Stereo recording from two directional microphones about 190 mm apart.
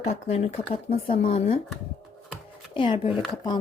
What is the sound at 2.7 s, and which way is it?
Speech, 25° left (ahead or behind).